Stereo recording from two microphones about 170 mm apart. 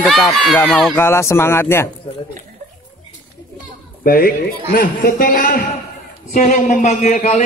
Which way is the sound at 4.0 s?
60° left (ahead or behind).